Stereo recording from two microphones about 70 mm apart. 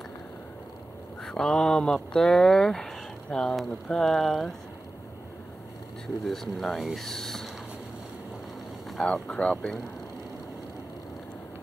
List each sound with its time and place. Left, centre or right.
1.2 s speech: centre
6.2 s speech: centre
9.1 s speech: centre